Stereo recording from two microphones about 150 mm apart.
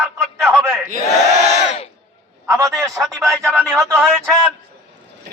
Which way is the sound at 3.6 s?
20° right (ahead or behind).